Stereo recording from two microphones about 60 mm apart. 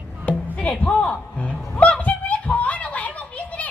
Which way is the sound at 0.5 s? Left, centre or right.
Centre.